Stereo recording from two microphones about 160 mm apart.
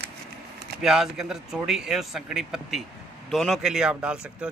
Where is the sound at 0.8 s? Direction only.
5° right (ahead or behind).